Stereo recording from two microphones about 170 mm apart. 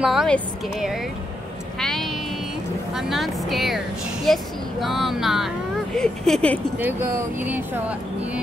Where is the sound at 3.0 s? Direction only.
Centre (ahead or behind).